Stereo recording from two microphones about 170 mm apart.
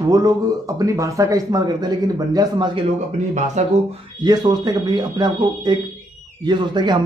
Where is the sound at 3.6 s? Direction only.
45° right (ahead or behind).